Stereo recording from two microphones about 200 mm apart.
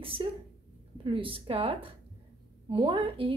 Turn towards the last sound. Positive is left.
turn(degrees=-25)  # may be behind; listen again after turning